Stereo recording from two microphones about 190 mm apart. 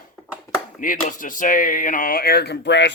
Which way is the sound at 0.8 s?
45° left (ahead or behind).